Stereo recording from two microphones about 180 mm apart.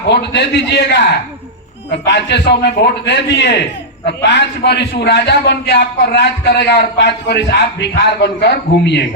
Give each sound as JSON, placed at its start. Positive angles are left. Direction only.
{"t": 0.1, "sound": "a man's voice", "side_deg": 70}